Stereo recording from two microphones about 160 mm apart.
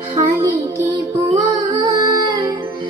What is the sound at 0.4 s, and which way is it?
Music, 30° right (ahead or behind).